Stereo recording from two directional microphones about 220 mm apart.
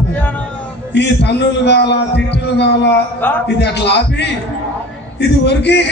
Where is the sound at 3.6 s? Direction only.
50° left (ahead or behind).